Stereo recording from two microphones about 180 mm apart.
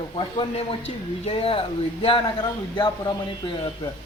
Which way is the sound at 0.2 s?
30° left (ahead or behind).